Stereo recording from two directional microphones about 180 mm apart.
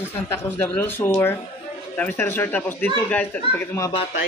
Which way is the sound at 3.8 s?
30° left (ahead or behind).